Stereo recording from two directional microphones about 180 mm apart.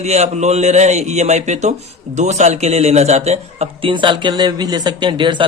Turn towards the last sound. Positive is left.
turn(degrees=-25)  # may be behind; listen again after turning